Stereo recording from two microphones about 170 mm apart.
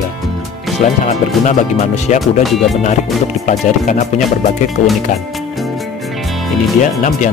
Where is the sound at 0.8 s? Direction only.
40° left (ahead or behind).